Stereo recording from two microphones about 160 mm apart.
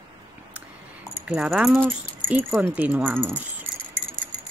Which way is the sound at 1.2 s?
5° right (ahead or behind).